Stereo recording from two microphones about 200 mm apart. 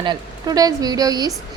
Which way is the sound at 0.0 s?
20° right (ahead or behind).